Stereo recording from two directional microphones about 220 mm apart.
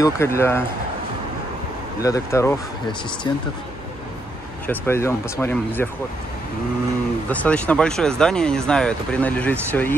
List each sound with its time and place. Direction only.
0.0 s speech: 10° left (ahead or behind)
2.0 s speech: 15° left (ahead or behind)
4.6 s speech: 10° left (ahead or behind)
7.2 s speech: 5° left (ahead or behind)